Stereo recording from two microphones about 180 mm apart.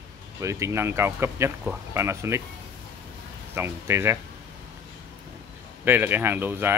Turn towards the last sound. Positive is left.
turn(degrees=-10)  # may be behind; listen again after turning